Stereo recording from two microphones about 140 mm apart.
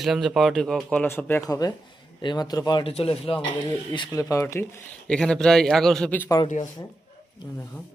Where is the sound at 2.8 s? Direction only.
45° left (ahead or behind).